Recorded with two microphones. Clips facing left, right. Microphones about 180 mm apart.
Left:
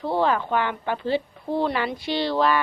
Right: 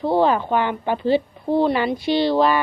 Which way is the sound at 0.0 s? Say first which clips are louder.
Right 5 dB; 20° right (ahead or behind).